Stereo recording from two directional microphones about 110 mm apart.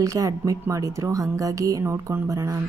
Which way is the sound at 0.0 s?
30° right (ahead or behind).